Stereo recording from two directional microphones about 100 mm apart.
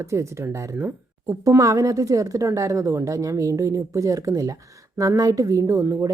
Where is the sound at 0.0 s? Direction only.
30° right (ahead or behind).